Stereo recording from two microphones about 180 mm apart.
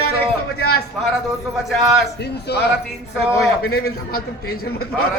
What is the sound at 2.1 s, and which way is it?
Speech, 65° left (ahead or behind).